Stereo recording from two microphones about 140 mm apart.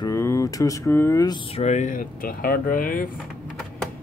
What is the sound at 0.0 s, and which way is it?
Speech, 20° left (ahead or behind).